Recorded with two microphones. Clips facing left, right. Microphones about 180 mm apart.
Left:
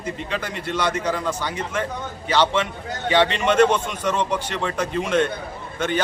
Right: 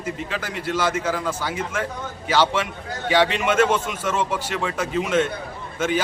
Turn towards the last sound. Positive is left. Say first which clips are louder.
# right 1 dB
turn(degrees=-5)  # may be behind; listen again after turning